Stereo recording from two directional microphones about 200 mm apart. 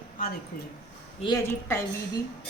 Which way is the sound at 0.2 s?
45° left (ahead or behind).